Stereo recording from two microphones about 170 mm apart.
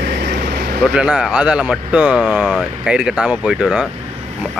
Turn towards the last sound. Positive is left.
turn(degrees=-5)  # may be behind; listen again after turning